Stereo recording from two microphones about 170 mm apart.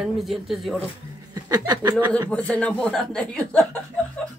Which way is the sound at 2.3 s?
10° left (ahead or behind).